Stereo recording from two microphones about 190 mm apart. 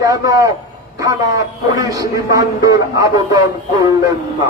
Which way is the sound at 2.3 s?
15° right (ahead or behind).